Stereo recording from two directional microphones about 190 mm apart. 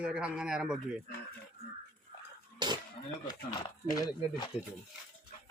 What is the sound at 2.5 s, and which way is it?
Cough, 20° right (ahead or behind).